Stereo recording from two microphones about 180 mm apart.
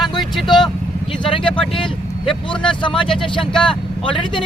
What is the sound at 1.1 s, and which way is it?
Speech, 30° left (ahead or behind).